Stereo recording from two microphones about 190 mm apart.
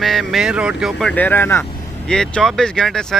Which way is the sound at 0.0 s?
Centre (ahead or behind).